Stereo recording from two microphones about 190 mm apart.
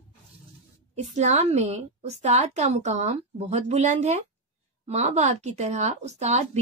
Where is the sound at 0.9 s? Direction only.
35° right (ahead or behind).